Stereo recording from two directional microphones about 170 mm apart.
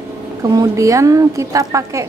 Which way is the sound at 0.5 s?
20° right (ahead or behind).